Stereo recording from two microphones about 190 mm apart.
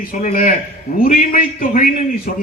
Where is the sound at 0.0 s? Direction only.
45° left (ahead or behind).